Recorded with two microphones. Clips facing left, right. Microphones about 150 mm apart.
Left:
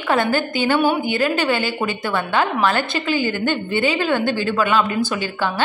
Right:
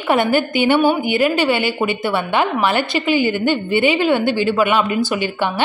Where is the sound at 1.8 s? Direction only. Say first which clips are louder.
Right 3 dB; 15° right (ahead or behind).